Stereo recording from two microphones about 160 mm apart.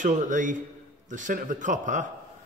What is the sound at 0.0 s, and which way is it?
A man's voice, 50° right (ahead or behind).